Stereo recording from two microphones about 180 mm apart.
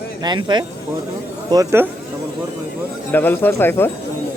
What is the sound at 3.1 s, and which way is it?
Speech, 10° left (ahead or behind).